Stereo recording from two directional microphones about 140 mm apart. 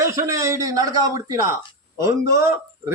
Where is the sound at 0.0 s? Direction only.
20° right (ahead or behind).